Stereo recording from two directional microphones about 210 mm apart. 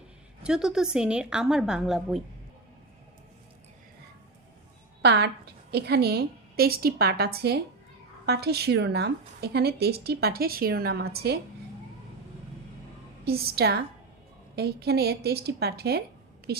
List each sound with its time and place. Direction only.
0.4 s a woman's voice: 5° right (ahead or behind)
5.0 s speech: 55° right (ahead or behind)
13.2 s speech: 50° right (ahead or behind)